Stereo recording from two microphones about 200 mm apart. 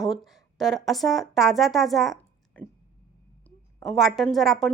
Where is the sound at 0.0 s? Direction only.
Centre (ahead or behind).